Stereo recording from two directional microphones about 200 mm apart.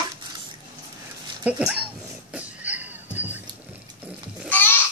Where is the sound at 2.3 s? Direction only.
5° right (ahead or behind).